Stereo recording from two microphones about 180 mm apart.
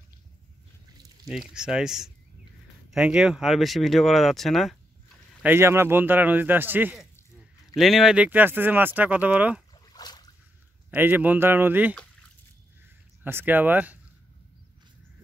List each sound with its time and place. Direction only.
1.2 s speech: centre (ahead or behind)
5.4 s speech: 15° right (ahead or behind)
9.9 s a sound: 20° left (ahead or behind)
10.9 s speech: 10° right (ahead or behind)
13.2 s speech: 10° right (ahead or behind)